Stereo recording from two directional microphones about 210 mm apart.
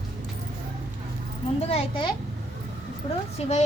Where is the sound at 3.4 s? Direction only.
30° left (ahead or behind).